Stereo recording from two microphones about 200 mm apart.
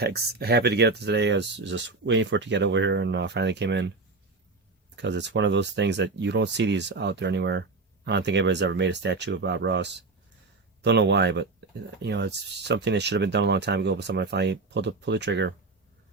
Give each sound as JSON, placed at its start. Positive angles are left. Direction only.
{"t": 0.0, "sound": "speech", "side_deg": -55}
{"t": 4.9, "sound": "speech", "side_deg": -60}